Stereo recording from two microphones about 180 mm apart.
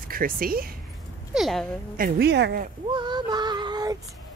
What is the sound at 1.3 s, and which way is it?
Speech, centre (ahead or behind).